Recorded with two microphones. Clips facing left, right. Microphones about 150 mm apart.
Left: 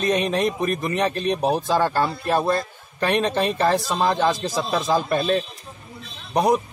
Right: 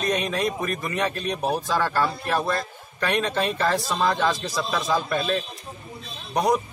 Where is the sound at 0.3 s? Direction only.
25° left (ahead or behind).